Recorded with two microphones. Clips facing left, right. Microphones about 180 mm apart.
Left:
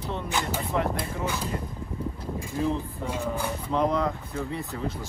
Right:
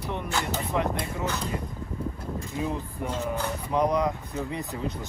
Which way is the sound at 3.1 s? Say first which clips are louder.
Even; 10° left (ahead or behind).